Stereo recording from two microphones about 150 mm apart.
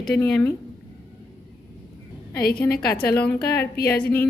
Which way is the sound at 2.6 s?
20° left (ahead or behind).